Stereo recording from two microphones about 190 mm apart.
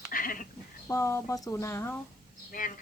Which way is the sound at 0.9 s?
15° left (ahead or behind).